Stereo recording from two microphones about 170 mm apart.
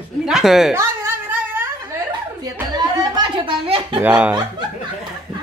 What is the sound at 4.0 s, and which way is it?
Speech, 10° right (ahead or behind).